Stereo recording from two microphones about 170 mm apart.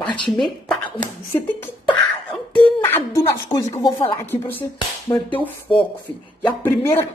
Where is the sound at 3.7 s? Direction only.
35° left (ahead or behind).